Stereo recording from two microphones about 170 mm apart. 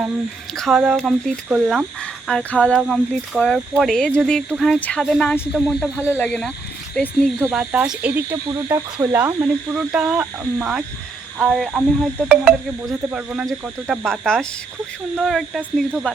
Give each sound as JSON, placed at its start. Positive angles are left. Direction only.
{"t": 0.5, "sound": "speech", "side_deg": 0}
{"t": 8.4, "sound": "speech", "side_deg": -20}